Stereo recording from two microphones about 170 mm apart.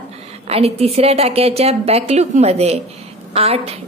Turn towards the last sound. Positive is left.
turn(degrees=-35)  # may be behind; listen again after turning